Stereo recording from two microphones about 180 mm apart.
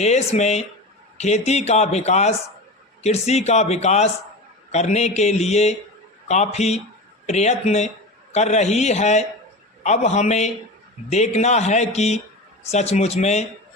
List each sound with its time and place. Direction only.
0.0 s speech: 40° left (ahead or behind)